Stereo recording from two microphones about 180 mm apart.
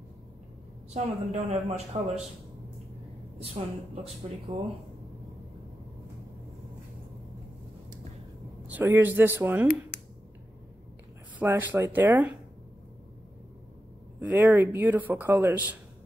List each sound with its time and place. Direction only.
0.9 s a woman's voice: 40° right (ahead or behind)
3.3 s a woman's voice: 35° right (ahead or behind)
4.5 s speech: 25° right (ahead or behind)
8.6 s speech: 10° right (ahead or behind)
11.3 s speech: 10° right (ahead or behind)
14.2 s speech: 10° right (ahead or behind)